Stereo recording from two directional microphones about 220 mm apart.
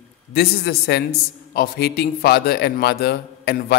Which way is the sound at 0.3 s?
45° left (ahead or behind).